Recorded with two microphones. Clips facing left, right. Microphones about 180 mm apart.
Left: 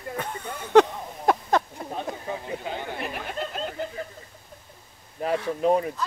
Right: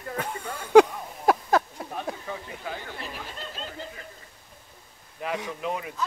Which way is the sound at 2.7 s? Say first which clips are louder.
Left 5 dB; 60° left (ahead or behind).